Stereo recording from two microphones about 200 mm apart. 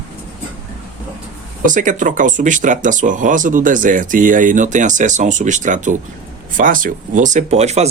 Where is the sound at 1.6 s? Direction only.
40° right (ahead or behind).